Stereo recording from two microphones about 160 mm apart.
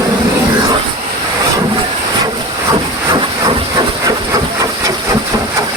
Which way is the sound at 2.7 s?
25° right (ahead or behind).